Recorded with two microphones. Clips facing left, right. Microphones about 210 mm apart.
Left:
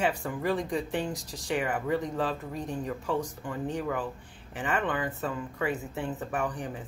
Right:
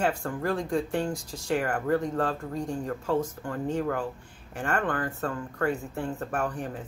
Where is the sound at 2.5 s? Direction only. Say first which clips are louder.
Right 3 dB; 20° left (ahead or behind).